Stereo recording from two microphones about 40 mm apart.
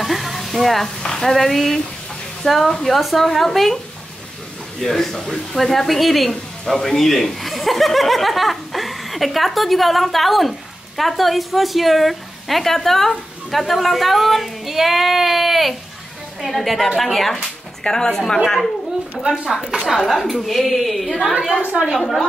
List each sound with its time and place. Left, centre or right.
0.0 s sizzle: centre
0.9 s a woman's voice: centre
17.8 s speech: centre
19.2 s a woman's voice: centre
19.9 s a woman's voice: centre